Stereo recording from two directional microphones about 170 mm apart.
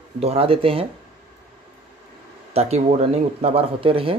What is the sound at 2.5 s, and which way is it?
Speech, 40° right (ahead or behind).